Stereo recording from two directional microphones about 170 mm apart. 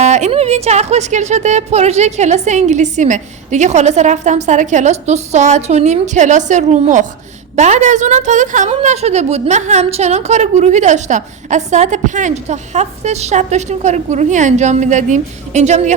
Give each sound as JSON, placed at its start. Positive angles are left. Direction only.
{"t": 0.0, "sound": "a woman's voice", "side_deg": -40}